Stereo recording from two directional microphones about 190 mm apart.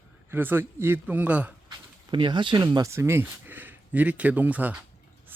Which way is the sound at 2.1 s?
25° right (ahead or behind).